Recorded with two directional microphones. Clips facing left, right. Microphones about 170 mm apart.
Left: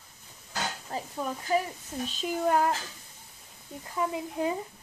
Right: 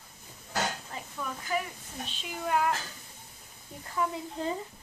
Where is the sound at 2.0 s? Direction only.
40° left (ahead or behind).